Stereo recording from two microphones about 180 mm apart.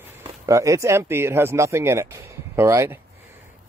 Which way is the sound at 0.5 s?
15° right (ahead or behind).